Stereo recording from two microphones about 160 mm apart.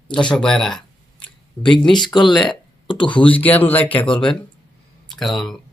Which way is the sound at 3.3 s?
10° left (ahead or behind).